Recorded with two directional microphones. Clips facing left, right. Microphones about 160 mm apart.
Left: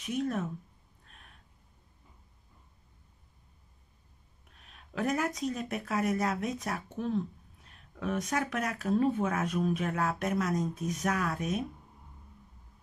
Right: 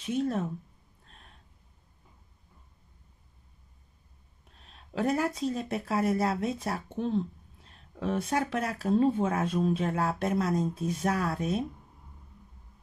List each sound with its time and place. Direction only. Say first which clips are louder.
0.0 s speech: right 3 dB; 30° right (ahead or behind)
1.0 s a sound: right 2 dB; 35° right (ahead or behind)
4.6 s speech: right 3 dB; 30° right (ahead or behind)